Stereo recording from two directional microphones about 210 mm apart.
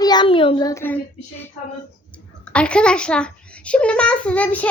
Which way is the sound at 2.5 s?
5° left (ahead or behind).